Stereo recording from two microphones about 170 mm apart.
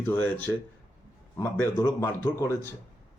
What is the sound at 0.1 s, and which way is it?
Speech, 10° left (ahead or behind).